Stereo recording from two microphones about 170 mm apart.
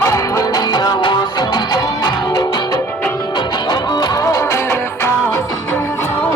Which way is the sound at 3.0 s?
15° left (ahead or behind).